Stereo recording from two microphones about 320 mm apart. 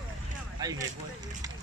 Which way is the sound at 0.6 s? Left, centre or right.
Centre.